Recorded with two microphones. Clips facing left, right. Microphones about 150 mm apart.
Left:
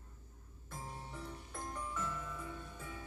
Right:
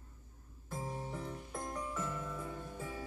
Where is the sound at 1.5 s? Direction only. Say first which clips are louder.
Right 3 dB; 35° right (ahead or behind).